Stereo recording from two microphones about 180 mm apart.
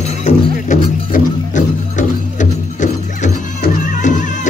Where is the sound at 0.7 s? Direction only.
45° left (ahead or behind).